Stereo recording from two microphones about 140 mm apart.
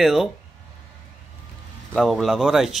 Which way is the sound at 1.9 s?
Centre (ahead or behind).